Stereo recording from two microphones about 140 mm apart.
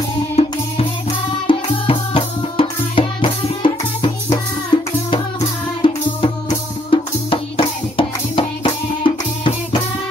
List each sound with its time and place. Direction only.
0.4 s music: 45° left (ahead or behind)